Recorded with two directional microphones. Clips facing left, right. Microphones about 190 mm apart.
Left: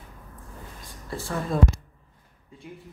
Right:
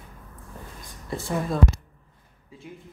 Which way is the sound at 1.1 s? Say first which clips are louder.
Right 3 dB; 20° right (ahead or behind).